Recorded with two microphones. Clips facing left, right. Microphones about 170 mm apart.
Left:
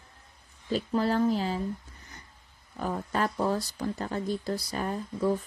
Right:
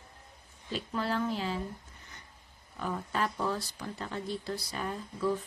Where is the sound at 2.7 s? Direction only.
40° left (ahead or behind).